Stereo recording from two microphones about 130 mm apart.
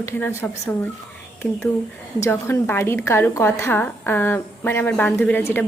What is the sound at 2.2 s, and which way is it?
A woman's voice, 20° left (ahead or behind).